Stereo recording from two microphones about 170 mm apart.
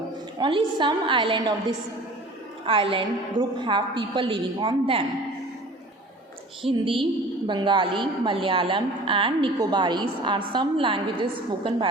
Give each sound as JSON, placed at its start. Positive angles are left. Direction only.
{"t": 0.3, "sound": "a woman's voice", "side_deg": -25}
{"t": 6.7, "sound": "a woman's voice", "side_deg": -30}